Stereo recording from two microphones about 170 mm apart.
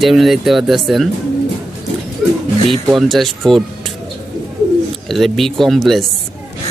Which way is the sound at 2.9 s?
Centre (ahead or behind).